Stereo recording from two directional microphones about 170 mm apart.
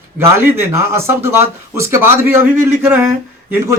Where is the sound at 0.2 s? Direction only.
15° right (ahead or behind).